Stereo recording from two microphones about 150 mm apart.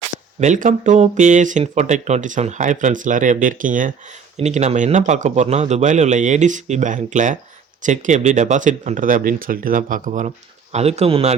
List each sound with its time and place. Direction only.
0.3 s speech: 55° right (ahead or behind)
4.4 s speech: 50° right (ahead or behind)